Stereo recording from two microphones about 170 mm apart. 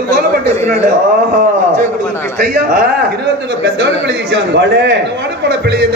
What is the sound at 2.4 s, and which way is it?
A man's voice, 60° right (ahead or behind).